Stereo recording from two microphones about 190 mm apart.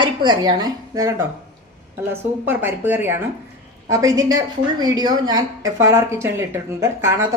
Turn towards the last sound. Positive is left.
turn(degrees=-15)  # may be behind; listen again after turning